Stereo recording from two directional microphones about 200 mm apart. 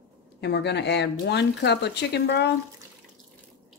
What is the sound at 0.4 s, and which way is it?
Speech, 60° left (ahead or behind).